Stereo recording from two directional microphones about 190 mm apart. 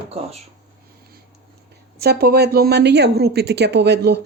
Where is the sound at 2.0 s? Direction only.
55° right (ahead or behind).